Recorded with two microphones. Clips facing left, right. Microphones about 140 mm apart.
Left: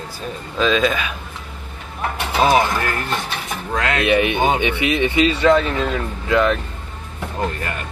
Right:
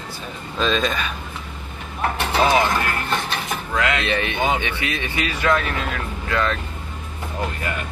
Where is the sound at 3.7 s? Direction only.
40° left (ahead or behind).